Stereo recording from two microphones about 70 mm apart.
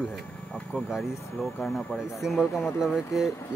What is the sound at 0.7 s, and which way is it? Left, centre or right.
Speech, centre.